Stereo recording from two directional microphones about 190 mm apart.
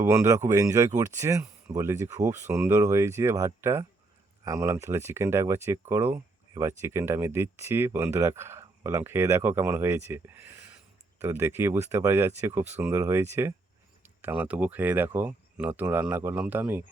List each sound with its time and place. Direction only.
0.0 s speech: 15° right (ahead or behind)